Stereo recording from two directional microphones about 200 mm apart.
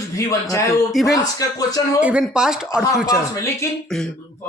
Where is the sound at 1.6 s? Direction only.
20° left (ahead or behind).